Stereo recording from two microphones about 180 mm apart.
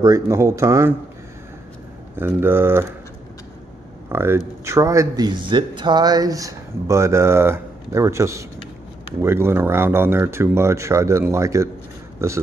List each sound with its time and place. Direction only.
0.0 s speech: 15° right (ahead or behind)
2.1 s speech: 10° right (ahead or behind)
4.1 s speech: 15° right (ahead or behind)